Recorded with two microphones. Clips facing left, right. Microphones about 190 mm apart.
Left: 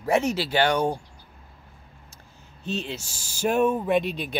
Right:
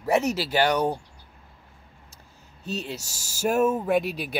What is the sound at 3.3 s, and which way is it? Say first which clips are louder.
Speech: even; 5° right (ahead or behind).